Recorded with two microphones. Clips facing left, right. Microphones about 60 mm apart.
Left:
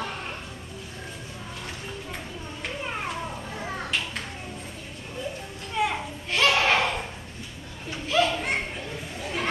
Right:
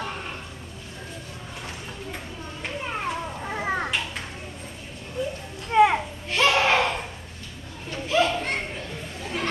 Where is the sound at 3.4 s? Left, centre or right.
Right.